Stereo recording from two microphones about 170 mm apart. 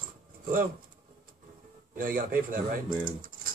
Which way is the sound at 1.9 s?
55° right (ahead or behind).